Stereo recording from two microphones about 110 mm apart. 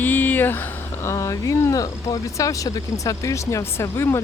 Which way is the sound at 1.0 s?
30° left (ahead or behind).